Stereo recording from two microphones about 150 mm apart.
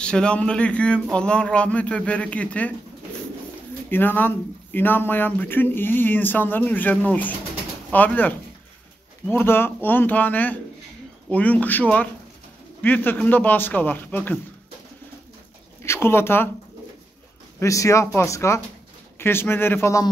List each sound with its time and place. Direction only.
0.0 s speech: 5° left (ahead or behind)
3.9 s speech: 10° left (ahead or behind)
15.8 s speech: 15° left (ahead or behind)
17.6 s speech: 20° left (ahead or behind)